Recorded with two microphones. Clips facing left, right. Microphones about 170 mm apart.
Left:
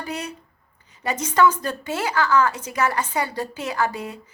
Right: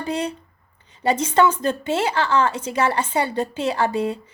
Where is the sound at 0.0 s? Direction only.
30° right (ahead or behind).